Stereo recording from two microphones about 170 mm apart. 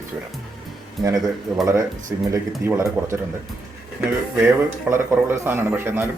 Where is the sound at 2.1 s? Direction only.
20° right (ahead or behind).